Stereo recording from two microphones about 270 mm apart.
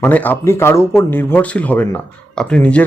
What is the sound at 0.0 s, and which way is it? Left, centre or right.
Speech, centre.